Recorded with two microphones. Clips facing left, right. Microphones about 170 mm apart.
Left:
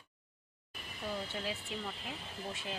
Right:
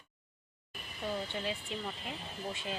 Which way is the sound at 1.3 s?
5° left (ahead or behind).